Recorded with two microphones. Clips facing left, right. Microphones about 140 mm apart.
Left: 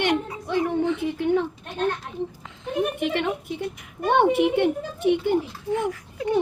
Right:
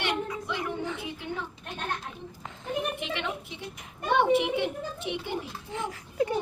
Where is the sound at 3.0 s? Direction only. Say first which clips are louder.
Left 8 dB; 50° left (ahead or behind).